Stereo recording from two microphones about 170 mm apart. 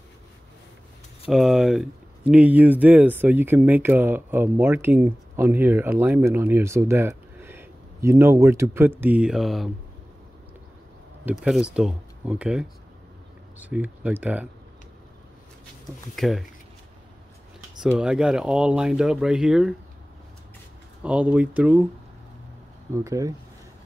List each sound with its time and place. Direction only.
1.3 s speech: 5° right (ahead or behind)
11.2 s speech: 5° right (ahead or behind)
16.2 s speech: centre (ahead or behind)
17.8 s speech: 5° right (ahead or behind)
21.0 s speech: 5° right (ahead or behind)
22.9 s speech: 20° right (ahead or behind)